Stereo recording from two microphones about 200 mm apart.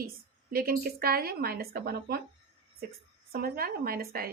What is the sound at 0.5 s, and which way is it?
A woman's voice, 50° right (ahead or behind).